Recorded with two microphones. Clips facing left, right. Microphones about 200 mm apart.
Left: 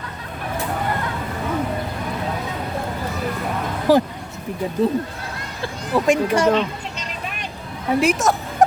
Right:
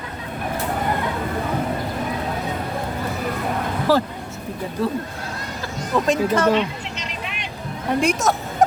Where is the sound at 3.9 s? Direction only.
15° left (ahead or behind).